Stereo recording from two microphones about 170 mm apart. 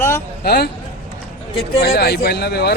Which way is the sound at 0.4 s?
70° left (ahead or behind).